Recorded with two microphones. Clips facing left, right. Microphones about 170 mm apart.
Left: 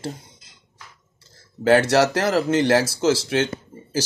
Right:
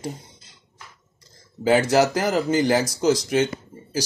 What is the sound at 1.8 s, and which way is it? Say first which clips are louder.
Speech: left 1 dB; 80° left.